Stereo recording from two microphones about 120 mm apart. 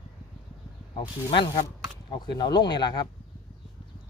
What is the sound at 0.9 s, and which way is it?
Speech, 45° left (ahead or behind).